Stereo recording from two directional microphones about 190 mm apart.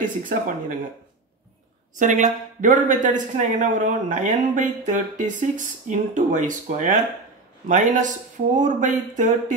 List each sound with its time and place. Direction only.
0.0 s speech: 45° right (ahead or behind)
2.0 s a woman's voice: 40° right (ahead or behind)